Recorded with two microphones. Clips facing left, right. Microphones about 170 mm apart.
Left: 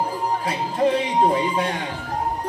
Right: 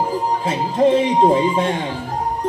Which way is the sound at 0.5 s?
25° right (ahead or behind).